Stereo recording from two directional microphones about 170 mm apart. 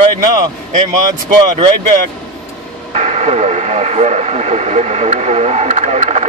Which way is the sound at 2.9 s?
40° right (ahead or behind).